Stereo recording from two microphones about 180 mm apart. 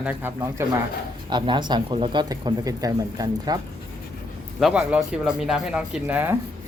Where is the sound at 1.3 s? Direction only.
25° right (ahead or behind).